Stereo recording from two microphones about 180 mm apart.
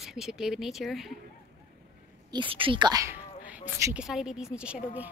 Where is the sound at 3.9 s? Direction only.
5° right (ahead or behind).